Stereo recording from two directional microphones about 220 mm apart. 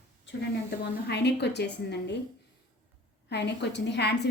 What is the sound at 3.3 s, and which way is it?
Speech, 50° left (ahead or behind).